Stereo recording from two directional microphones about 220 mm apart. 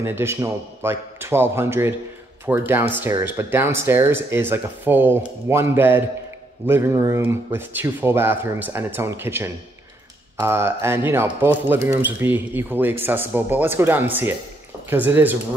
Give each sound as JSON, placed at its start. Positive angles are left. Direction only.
{"t": 0.0, "sound": "speech", "side_deg": -10}